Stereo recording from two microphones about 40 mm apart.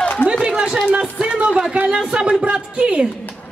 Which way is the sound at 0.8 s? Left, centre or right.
Right.